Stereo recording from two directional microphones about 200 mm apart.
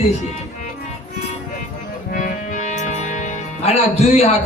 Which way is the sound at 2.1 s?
45° left (ahead or behind).